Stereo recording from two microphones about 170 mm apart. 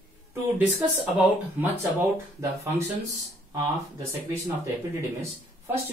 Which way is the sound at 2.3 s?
15° right (ahead or behind).